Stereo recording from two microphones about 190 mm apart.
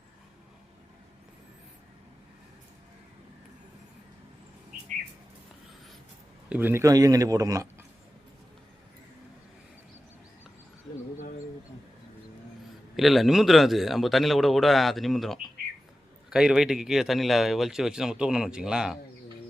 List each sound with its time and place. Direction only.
6.5 s a man's voice: 10° right (ahead or behind)
13.0 s speech: centre (ahead or behind)